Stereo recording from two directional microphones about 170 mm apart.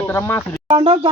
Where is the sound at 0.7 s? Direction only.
30° right (ahead or behind).